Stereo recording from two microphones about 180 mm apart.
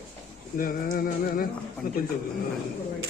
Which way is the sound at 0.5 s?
50° left (ahead or behind).